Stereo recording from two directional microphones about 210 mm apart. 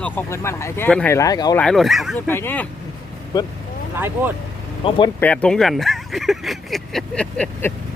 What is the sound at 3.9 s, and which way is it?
Speech, 10° right (ahead or behind).